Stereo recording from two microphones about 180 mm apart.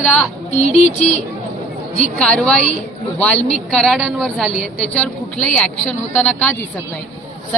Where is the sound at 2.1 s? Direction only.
5° left (ahead or behind).